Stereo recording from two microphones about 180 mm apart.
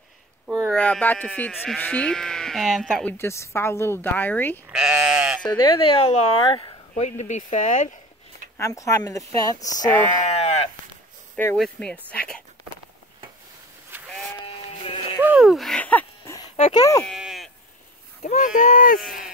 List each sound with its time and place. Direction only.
0.7 s speech: 5° left (ahead or behind)
4.6 s speech: 5° right (ahead or behind)
5.4 s speech: 25° left (ahead or behind)
6.9 s speech: 40° left (ahead or behind)
8.5 s speech: 15° left (ahead or behind)
10.2 s sheep: 35° left (ahead or behind)
11.5 s speech: 5° left (ahead or behind)
13.9 s sheep: 10° right (ahead or behind)
15.2 s a sound: 5° right (ahead or behind)
16.5 s a sound: 30° left (ahead or behind)
17.0 s livestock: centre (ahead or behind)
18.2 s speech: 45° left (ahead or behind)